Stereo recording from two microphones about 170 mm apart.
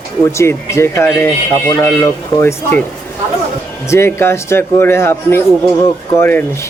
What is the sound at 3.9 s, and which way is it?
Speech, 15° left (ahead or behind).